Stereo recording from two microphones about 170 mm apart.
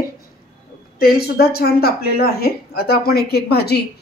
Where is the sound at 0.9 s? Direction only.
65° left (ahead or behind).